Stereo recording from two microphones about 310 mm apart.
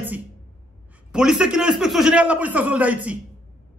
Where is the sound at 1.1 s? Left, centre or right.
Centre.